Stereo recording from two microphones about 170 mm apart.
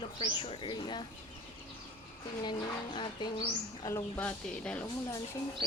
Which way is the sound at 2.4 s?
25° left (ahead or behind).